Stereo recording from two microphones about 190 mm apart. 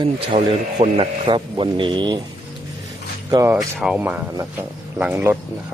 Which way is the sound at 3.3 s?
15° right (ahead or behind).